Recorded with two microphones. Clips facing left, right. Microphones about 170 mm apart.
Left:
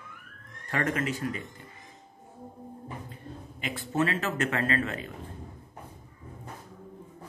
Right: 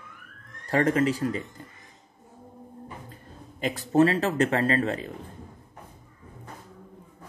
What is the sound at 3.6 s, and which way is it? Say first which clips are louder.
A man's voice: right 8 dB; 40° right (ahead or behind).